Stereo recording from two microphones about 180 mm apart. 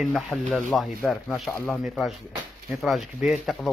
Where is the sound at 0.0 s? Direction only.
Centre (ahead or behind).